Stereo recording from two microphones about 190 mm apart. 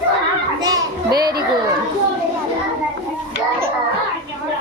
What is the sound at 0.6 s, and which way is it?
Children playing, 20° right (ahead or behind).